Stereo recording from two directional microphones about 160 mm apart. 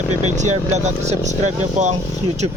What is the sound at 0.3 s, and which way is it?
Speech, 45° right (ahead or behind).